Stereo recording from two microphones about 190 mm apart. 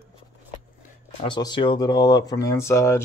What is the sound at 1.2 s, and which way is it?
Speech, 25° left (ahead or behind).